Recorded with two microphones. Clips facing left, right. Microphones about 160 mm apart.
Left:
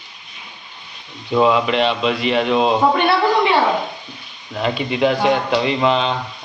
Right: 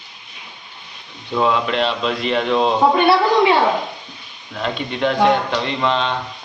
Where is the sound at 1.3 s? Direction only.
5° left (ahead or behind).